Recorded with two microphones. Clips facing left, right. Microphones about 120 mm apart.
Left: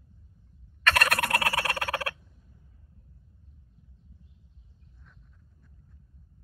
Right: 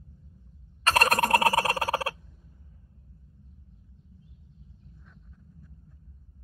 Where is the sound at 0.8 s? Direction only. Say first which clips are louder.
Right 3 dB; 35° right (ahead or behind).